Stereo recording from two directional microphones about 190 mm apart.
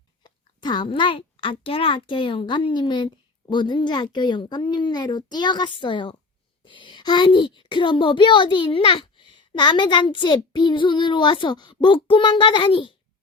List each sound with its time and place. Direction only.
0.2 s a woman's voice: 25° left (ahead or behind)